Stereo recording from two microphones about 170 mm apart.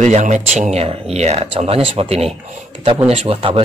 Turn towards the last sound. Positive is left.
turn(degrees=-35)  # may be behind; listen again after turning